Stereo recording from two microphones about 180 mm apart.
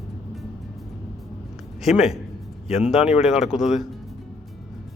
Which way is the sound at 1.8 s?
Centre (ahead or behind).